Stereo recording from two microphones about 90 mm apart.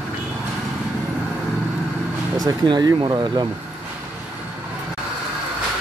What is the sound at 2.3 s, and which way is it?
Speech, 50° right (ahead or behind).